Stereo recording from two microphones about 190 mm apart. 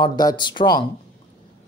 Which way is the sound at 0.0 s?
20° left (ahead or behind).